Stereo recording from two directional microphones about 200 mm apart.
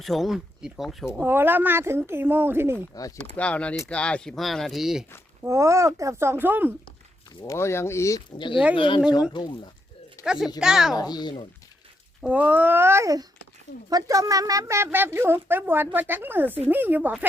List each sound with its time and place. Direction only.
0.0 s speech: centre (ahead or behind)
3.3 s speech: 5° left (ahead or behind)
5.4 s speech: 15° right (ahead or behind)
7.3 s speech: 15° left (ahead or behind)
10.2 s speech: 5° right (ahead or behind)
10.9 s speech: 20° left (ahead or behind)
12.2 s speech: 5° right (ahead or behind)